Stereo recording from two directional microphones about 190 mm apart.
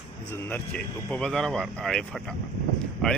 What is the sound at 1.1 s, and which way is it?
Speech, 5° left (ahead or behind).